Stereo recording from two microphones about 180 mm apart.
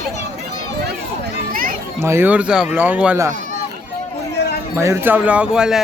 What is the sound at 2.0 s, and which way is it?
Speech, 10° right (ahead or behind).